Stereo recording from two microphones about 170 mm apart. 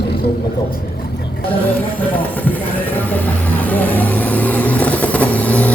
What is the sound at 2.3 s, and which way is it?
Vehicle, 10° left (ahead or behind).